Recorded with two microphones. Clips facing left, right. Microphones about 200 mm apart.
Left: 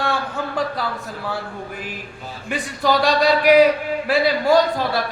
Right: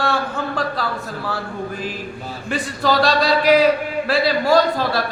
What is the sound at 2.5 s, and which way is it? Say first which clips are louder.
Speech: even; 15° left (ahead or behind).